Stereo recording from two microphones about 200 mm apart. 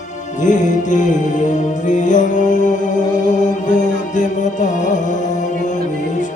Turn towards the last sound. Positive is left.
turn(degrees=40)  # may be behind; listen again after turning